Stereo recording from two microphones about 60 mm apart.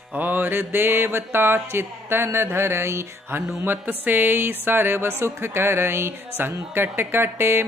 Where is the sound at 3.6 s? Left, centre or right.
Right.